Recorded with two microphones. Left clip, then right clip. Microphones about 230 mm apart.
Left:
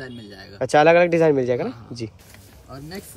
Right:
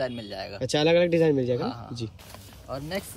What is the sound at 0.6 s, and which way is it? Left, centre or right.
Speech, left.